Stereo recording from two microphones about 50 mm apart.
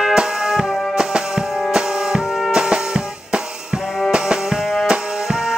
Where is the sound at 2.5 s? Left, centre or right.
Centre.